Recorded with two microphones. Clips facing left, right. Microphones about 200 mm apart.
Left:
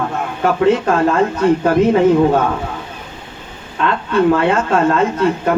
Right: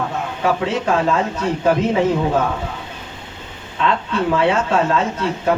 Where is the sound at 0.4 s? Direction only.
55° left (ahead or behind).